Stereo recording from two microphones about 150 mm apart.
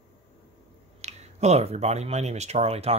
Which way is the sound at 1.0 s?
45° right (ahead or behind).